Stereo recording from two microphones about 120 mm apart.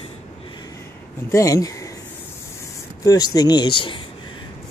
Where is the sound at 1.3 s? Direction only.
25° left (ahead or behind).